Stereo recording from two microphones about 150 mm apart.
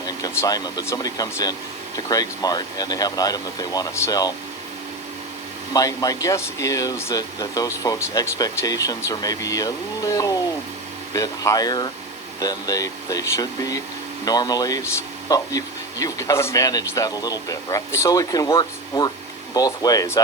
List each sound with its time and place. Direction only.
0.0 s speech: 25° left (ahead or behind)
5.7 s speech: 25° left (ahead or behind)
19.5 s speech: 25° left (ahead or behind)